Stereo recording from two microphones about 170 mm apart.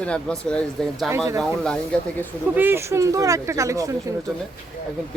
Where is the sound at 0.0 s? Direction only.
5° left (ahead or behind).